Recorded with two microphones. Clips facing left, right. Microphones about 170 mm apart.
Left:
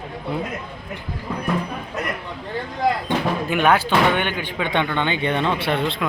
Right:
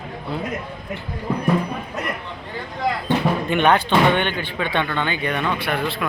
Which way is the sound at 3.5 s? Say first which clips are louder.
Even; 5° left (ahead or behind).